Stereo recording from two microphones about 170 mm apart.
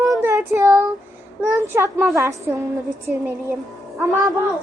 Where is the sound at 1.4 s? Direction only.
20° right (ahead or behind).